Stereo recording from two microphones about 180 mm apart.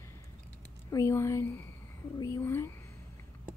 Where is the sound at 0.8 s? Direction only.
15° left (ahead or behind).